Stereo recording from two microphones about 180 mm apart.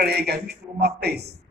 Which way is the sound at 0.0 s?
60° right (ahead or behind).